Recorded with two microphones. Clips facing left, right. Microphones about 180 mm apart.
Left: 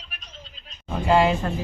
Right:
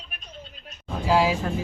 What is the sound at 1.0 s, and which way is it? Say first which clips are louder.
Speech: left 2 dB; centre (ahead or behind).